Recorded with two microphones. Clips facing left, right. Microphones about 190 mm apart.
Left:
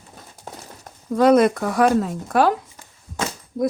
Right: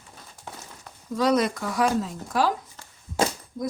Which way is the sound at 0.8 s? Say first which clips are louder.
Left 8 dB; 55° left (ahead or behind).